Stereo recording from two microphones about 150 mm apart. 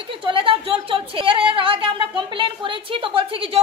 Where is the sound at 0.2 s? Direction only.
35° right (ahead or behind).